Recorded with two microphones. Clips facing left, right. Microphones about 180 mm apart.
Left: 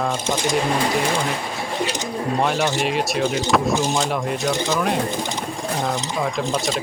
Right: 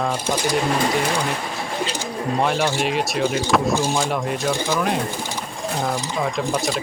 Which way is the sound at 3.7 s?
20° left (ahead or behind).